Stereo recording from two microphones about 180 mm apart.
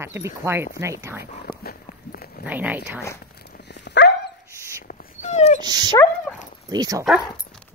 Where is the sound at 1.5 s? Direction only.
55° left (ahead or behind).